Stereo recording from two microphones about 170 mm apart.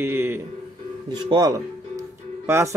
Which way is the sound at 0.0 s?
15° right (ahead or behind).